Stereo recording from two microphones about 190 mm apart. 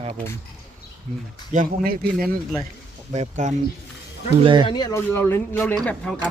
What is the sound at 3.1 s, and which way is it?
Speech, 40° right (ahead or behind).